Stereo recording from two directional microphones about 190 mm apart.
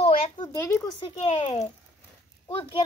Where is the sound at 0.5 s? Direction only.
15° left (ahead or behind).